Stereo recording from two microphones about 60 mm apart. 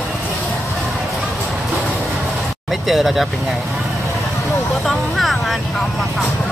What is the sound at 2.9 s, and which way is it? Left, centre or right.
Speech, centre.